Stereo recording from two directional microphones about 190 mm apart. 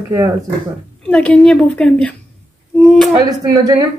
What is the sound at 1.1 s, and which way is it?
Speech, 5° left (ahead or behind).